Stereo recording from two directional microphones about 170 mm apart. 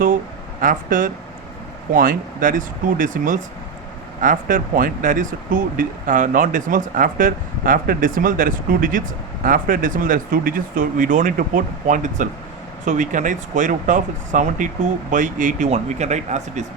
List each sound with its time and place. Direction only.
0.6 s speech: 50° right (ahead or behind)